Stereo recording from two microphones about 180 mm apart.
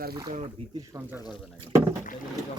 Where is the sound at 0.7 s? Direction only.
15° right (ahead or behind).